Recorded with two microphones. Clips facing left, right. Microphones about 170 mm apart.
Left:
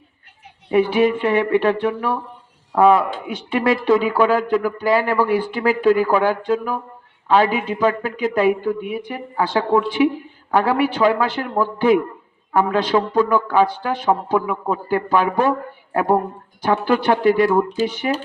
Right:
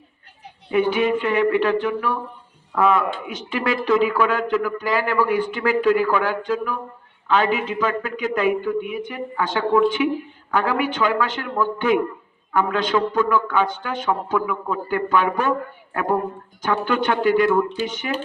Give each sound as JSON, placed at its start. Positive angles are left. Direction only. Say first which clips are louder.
{"t": 0.7, "sound": "speech", "louder": "left 3 dB", "side_deg": 30}